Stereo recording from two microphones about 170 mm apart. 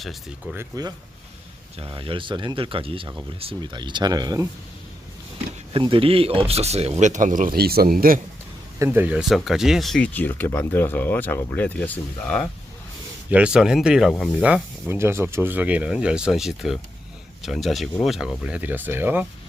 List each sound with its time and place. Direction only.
0.5 s speech: 20° right (ahead or behind)
1.8 s speech: 30° right (ahead or behind)
5.7 s speech: 30° right (ahead or behind); by 8.2 s 55° right (ahead or behind)
8.8 s speech: 15° right (ahead or behind)